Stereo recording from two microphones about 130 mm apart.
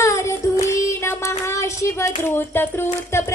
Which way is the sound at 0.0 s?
20° left (ahead or behind).